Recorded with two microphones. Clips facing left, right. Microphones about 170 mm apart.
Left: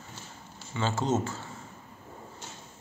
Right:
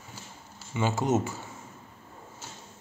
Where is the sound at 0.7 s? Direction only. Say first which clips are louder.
Right 2 dB; 15° right (ahead or behind).